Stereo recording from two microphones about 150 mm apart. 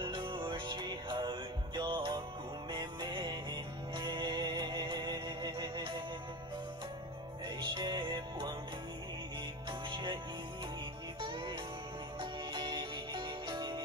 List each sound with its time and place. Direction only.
0.0 s music: 30° right (ahead or behind)
7.4 s music: 30° right (ahead or behind)
9.7 s music: 30° right (ahead or behind)
11.1 s music: 30° right (ahead or behind)